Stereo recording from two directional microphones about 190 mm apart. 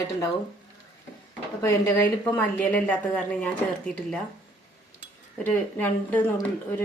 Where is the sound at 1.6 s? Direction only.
10° left (ahead or behind).